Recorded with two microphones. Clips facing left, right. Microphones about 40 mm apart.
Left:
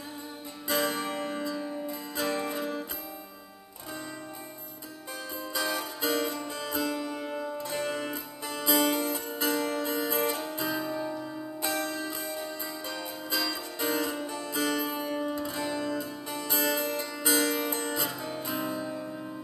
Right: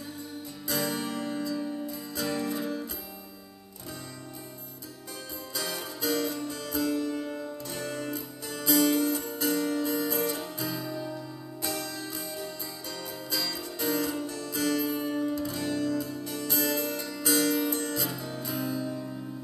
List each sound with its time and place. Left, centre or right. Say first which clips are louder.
0.7 s music: left 2 dB; left
5.5 s music: left 4 dB; left